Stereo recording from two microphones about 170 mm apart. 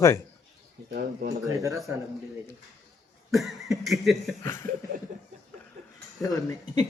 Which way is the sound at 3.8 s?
Centre (ahead or behind).